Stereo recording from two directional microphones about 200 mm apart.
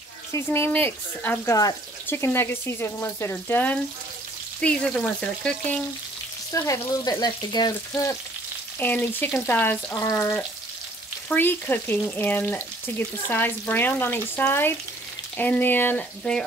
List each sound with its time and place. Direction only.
0.3 s speech: 10° left (ahead or behind)
4.6 s frying: 5° left (ahead or behind)
6.5 s speech: 15° left (ahead or behind)
8.7 s speech: 10° left (ahead or behind)